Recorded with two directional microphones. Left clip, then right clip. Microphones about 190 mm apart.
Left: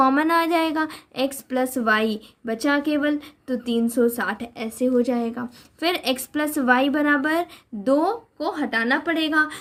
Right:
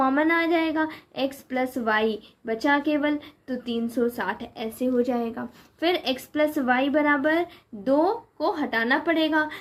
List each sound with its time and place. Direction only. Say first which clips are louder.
0.0 s a woman's voice: left 3 dB; 40° left (ahead or behind)